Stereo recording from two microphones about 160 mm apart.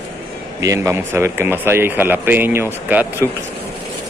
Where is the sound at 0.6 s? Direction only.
20° right (ahead or behind).